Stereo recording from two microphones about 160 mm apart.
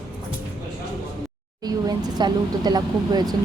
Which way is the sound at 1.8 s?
25° right (ahead or behind).